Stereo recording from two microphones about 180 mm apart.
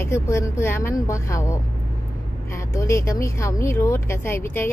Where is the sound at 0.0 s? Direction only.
15° left (ahead or behind).